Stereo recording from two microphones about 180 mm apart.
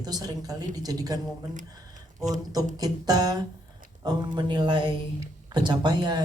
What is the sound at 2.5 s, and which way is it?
Speech, 20° right (ahead or behind).